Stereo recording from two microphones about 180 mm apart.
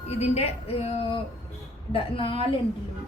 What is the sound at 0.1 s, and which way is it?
A woman's voice, 35° left (ahead or behind).